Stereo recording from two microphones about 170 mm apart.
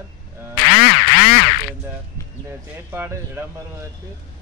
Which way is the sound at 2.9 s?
15° right (ahead or behind).